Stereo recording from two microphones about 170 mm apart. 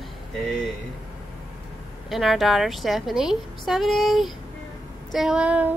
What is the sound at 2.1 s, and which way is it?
A woman's voice, centre (ahead or behind).